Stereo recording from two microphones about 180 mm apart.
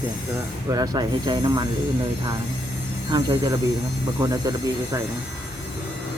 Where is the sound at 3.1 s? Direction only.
25° right (ahead or behind).